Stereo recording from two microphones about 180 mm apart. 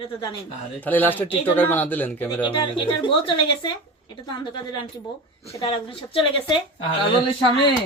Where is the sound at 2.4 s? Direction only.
30° left (ahead or behind).